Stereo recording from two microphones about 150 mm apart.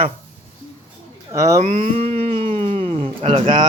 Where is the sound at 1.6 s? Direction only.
50° right (ahead or behind).